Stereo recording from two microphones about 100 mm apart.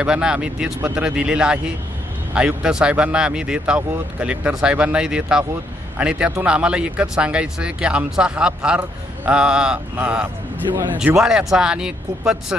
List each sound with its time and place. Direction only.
0.0 s speech: 10° right (ahead or behind)
11.1 s speech: 5° right (ahead or behind)